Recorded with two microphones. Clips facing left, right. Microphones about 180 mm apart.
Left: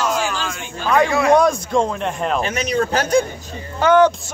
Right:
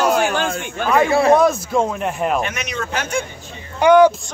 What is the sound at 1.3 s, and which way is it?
Speech, 5° right (ahead or behind).